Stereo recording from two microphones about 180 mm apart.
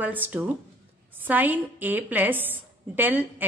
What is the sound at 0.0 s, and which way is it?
A woman's voice, 10° right (ahead or behind).